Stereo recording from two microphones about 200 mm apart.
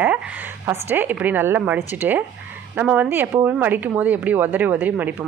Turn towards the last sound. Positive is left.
turn(degrees=-10)  # may be behind; listen again after turning